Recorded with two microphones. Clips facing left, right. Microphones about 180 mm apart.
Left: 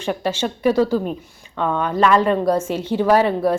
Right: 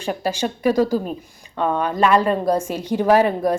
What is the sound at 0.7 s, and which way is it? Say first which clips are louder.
A woman's voice: left 1 dB; 15° right (ahead or behind).